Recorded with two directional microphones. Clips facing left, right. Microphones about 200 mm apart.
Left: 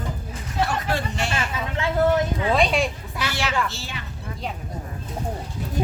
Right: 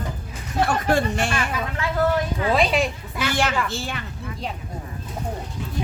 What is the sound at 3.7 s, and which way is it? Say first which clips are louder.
Speech: right 7 dB; 55° right (ahead or behind).